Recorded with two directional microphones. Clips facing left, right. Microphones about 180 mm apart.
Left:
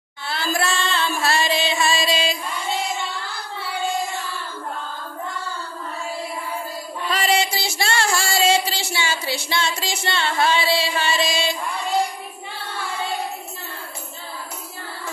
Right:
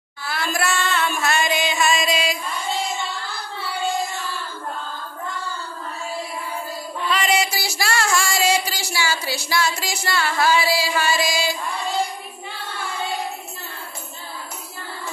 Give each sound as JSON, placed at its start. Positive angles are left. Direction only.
{"t": 0.3, "sound": "music", "side_deg": 30}
{"t": 7.1, "sound": "music", "side_deg": 35}